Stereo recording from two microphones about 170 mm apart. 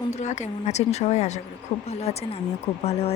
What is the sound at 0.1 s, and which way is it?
Speech, 45° left (ahead or behind).